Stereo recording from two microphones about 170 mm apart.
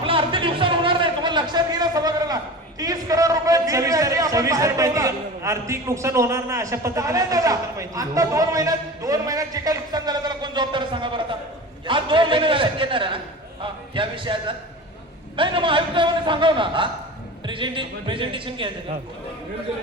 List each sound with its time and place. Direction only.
0.0 s a man's voice: 30° right (ahead or behind)
11.9 s a sound: 30° right (ahead or behind)
15.4 s a man's voice: 30° right (ahead or behind)